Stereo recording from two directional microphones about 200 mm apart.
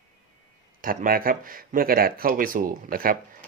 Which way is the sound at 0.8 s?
45° right (ahead or behind).